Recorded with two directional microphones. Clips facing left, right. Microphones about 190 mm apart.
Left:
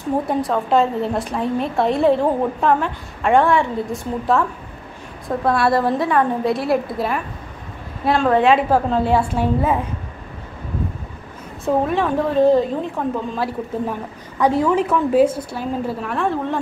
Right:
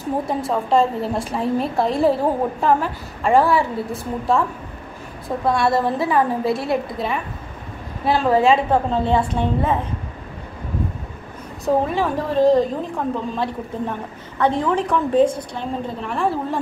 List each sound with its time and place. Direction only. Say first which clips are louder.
0.3 s a woman's voice: even; centre (ahead or behind)
11.6 s a woman's voice: left 1 dB; centre (ahead or behind)